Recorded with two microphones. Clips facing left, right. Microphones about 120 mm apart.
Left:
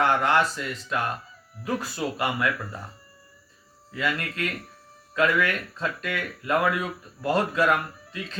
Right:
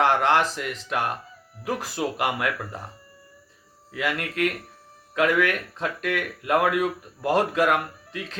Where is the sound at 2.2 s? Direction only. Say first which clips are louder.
Left 1 dB; 65° right (ahead or behind).